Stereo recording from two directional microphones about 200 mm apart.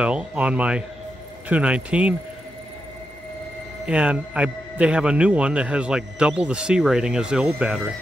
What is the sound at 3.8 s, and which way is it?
Speech, 5° right (ahead or behind).